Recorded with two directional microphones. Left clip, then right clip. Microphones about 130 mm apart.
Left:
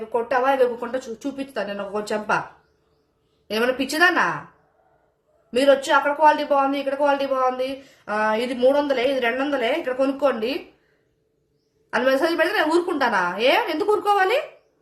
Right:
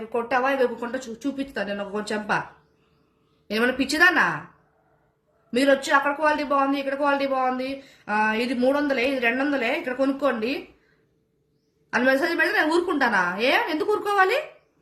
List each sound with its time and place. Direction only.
0.1 s a woman's voice: 35° left (ahead or behind)
3.4 s a woman's voice: 30° left (ahead or behind)
5.5 s a woman's voice: 35° left (ahead or behind)
12.0 s a woman's voice: 35° left (ahead or behind)